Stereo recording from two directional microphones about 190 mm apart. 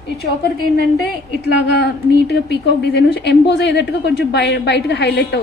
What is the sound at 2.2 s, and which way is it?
A woman's voice, 60° left (ahead or behind).